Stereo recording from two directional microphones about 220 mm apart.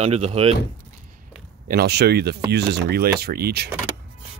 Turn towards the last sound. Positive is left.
turn(degrees=-45)  # may be behind; listen again after turning